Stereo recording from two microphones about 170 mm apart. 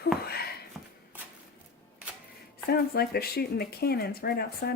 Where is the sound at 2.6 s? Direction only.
65° left (ahead or behind).